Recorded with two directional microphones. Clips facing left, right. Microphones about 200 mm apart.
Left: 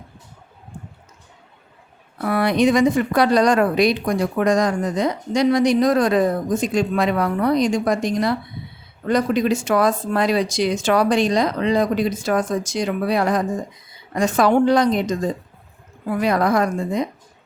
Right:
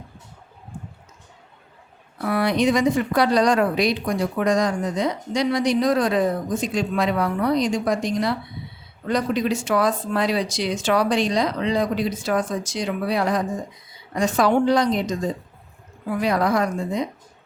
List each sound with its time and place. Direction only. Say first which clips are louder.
2.3 s speech: left 3 dB; 55° left (ahead or behind)
16.2 s speech: left 2 dB; 50° left (ahead or behind)